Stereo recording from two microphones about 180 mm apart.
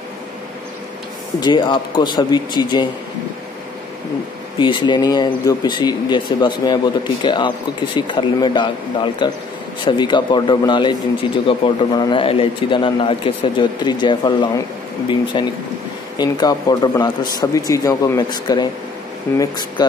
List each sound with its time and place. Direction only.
1.4 s a man's voice: 25° left (ahead or behind)
4.6 s a man's voice: 25° left (ahead or behind)